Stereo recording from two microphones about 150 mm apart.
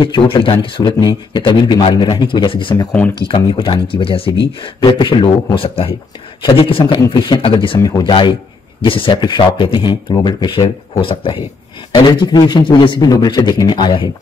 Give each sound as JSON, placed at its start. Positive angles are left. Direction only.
{"t": 0.0, "sound": "a man's voice", "side_deg": 35}